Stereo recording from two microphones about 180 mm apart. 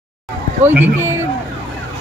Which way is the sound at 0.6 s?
10° right (ahead or behind).